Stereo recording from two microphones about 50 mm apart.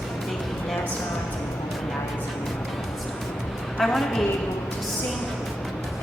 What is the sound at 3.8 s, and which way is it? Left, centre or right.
Speech, centre.